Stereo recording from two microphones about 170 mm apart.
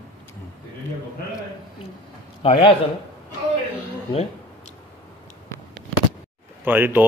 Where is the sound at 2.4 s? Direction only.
35° left (ahead or behind).